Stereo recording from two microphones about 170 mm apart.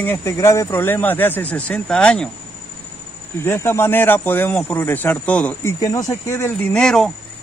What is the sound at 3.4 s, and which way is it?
Speech, 15° left (ahead or behind).